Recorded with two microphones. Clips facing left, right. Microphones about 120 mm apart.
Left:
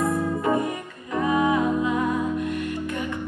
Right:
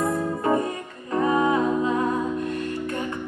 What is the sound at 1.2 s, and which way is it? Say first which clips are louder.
Music: even; 30° right (ahead or behind).